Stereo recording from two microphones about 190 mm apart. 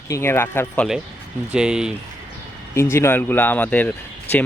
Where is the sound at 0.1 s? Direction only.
15° left (ahead or behind).